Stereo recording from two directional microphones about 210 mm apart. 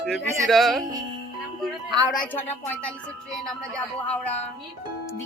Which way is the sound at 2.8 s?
Centre (ahead or behind).